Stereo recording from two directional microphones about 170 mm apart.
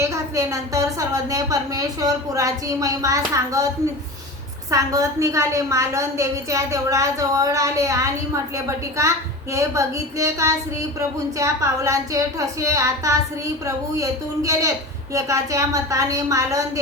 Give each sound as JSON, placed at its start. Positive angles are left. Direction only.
{"t": 0.0, "sound": "a woman's voice", "side_deg": -20}
{"t": 4.7, "sound": "a woman's voice", "side_deg": -20}